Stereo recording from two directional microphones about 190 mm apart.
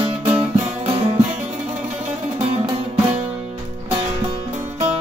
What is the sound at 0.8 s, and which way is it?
Music, 30° right (ahead or behind).